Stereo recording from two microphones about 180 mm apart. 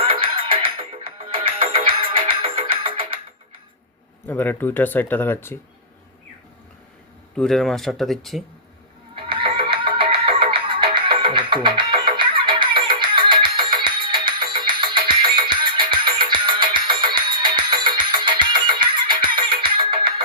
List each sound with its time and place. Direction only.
0.0 s music: 30° right (ahead or behind)
4.3 s speech: 10° left (ahead or behind)
7.3 s speech: centre (ahead or behind)
9.1 s neigh: 30° right (ahead or behind)